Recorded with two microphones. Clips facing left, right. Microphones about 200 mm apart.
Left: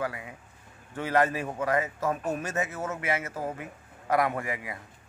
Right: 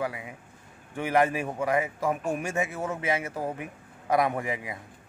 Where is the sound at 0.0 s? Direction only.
15° right (ahead or behind).